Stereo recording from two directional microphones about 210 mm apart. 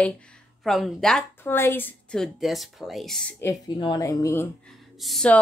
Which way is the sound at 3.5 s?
20° left (ahead or behind).